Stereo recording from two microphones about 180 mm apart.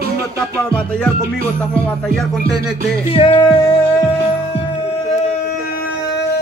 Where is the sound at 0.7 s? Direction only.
5° left (ahead or behind).